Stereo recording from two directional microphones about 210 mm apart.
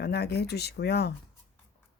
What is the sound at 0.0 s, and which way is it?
Speech, 50° left (ahead or behind).